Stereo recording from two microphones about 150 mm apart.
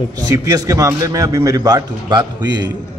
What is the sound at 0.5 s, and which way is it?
A man's voice, 20° right (ahead or behind).